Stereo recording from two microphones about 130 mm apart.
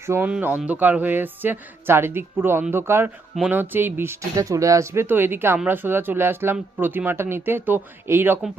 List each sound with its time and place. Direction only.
0.0 s speech: 20° right (ahead or behind)